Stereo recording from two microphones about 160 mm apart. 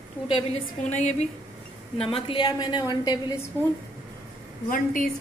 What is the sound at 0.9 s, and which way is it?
Speech, 45° left (ahead or behind).